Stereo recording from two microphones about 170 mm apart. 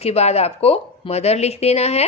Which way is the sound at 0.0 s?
40° left (ahead or behind).